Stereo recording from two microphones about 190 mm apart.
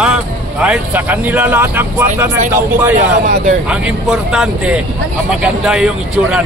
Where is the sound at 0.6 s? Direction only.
10° right (ahead or behind).